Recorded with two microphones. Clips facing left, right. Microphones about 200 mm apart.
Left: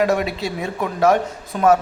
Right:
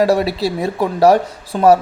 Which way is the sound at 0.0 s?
35° right (ahead or behind).